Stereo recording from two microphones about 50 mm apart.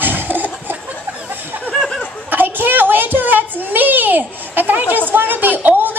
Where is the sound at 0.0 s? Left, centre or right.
Right.